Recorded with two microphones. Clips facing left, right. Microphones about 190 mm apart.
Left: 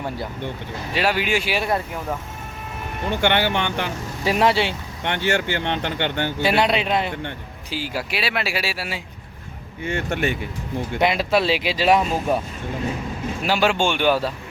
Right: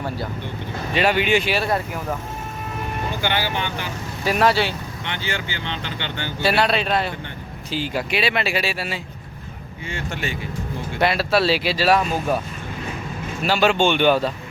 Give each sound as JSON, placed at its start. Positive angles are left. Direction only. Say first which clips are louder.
{"t": 0.9, "sound": "speech", "louder": "right 3 dB", "side_deg": 5}
{"t": 3.2, "sound": "speech", "louder": "left 5 dB", "side_deg": 60}
{"t": 4.2, "sound": "speech", "louder": "even", "side_deg": 25}
{"t": 5.0, "sound": "speech", "louder": "left 8 dB", "side_deg": 65}
{"t": 6.4, "sound": "speech", "louder": "right 1 dB", "side_deg": 20}
{"t": 7.7, "sound": "speech", "louder": "right 3 dB", "side_deg": 5}
{"t": 9.8, "sound": "speech", "louder": "left 6 dB", "side_deg": 55}
{"t": 10.9, "sound": "speech", "louder": "even", "side_deg": 20}
{"t": 13.4, "sound": "speech", "louder": "right 2 dB", "side_deg": 10}